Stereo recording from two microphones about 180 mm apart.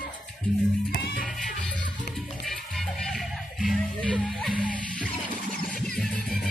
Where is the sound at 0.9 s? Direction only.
55° left (ahead or behind).